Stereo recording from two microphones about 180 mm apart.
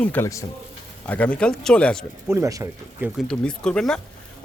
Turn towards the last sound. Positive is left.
turn(degrees=5)  # may be behind; listen again after turning